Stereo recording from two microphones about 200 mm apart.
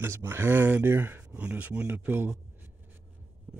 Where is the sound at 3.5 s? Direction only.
5° right (ahead or behind).